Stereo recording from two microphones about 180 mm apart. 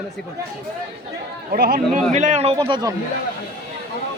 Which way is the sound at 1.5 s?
55° right (ahead or behind).